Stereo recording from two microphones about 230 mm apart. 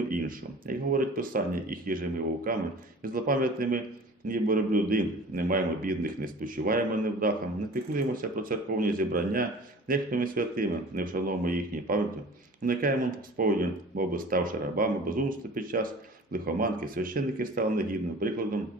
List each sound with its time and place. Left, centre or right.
0.1 s a man's voice: right